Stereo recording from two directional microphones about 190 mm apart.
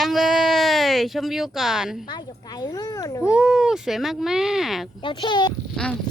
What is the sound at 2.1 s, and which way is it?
Speech, 20° left (ahead or behind).